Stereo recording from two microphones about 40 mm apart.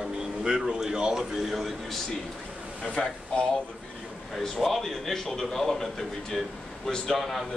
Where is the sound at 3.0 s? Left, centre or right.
Centre.